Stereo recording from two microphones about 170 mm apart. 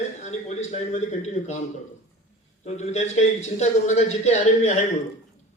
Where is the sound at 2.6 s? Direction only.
40° left (ahead or behind).